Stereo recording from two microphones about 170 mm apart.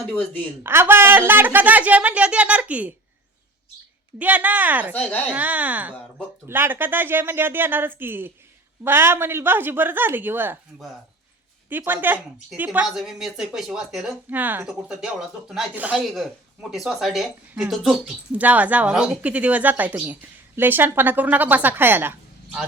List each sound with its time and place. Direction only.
0.6 s a woman's voice: 15° right (ahead or behind)
4.2 s a woman's voice: 10° right (ahead or behind)
4.9 s a woman's voice: 5° left (ahead or behind)
5.3 s a woman's voice: 10° right (ahead or behind)
11.7 s a woman's voice: 10° right (ahead or behind)